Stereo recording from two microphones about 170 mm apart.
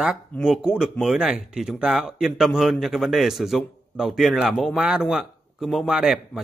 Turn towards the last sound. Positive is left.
turn(degrees=-5)  # may be behind; listen again after turning